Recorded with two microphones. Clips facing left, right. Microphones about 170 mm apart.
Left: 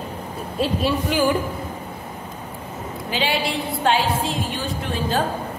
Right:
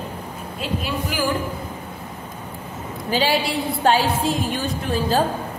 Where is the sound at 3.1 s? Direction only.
40° right (ahead or behind).